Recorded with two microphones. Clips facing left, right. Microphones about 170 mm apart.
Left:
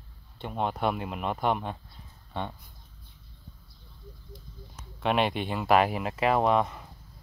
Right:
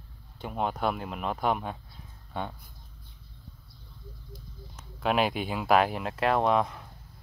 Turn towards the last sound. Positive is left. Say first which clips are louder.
# left 1 dB
turn(degrees=0)  # may be behind; listen again after turning